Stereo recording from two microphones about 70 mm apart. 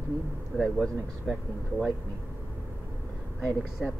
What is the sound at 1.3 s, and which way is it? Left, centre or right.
Speech, centre.